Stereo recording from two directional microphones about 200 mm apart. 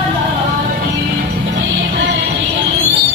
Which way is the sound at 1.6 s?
65° right (ahead or behind).